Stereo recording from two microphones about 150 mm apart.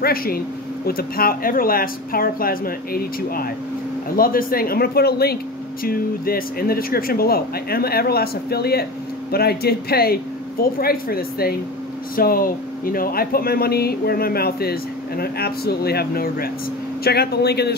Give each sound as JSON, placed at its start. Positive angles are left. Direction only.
{"t": 0.0, "sound": "speech", "side_deg": 80}
{"t": 5.9, "sound": "speech", "side_deg": 80}
{"t": 12.2, "sound": "speech", "side_deg": 75}